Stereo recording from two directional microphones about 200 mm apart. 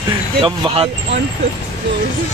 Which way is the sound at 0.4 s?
25° right (ahead or behind).